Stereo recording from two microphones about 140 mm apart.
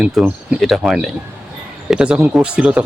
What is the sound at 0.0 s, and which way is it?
Speech, 5° right (ahead or behind).